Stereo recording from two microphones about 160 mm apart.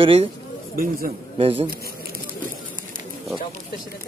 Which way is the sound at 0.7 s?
65° right (ahead or behind).